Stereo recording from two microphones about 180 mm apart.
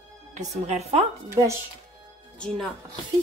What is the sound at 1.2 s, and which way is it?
Speech, 15° right (ahead or behind).